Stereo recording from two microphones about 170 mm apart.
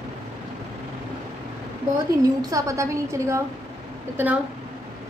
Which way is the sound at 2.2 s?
20° right (ahead or behind).